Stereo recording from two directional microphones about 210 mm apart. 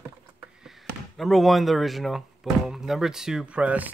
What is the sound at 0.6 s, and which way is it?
Speech, centre (ahead or behind).